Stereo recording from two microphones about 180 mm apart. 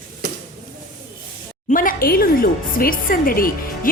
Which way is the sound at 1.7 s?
50° left (ahead or behind).